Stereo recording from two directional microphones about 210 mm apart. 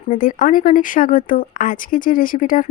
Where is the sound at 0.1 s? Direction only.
40° left (ahead or behind).